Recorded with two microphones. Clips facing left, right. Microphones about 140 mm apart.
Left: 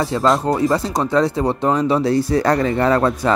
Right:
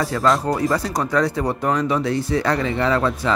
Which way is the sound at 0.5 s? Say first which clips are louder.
Left 3 dB; 25° left (ahead or behind).